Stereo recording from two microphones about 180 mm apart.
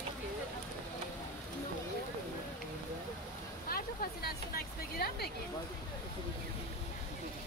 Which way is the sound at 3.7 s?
55° left (ahead or behind).